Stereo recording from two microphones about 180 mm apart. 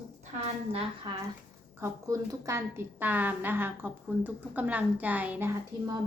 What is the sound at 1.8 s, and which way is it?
A woman's voice, 15° right (ahead or behind).